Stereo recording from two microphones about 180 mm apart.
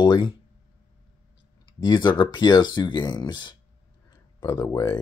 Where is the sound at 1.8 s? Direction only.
20° left (ahead or behind).